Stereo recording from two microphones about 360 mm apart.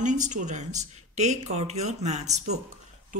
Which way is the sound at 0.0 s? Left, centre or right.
Centre.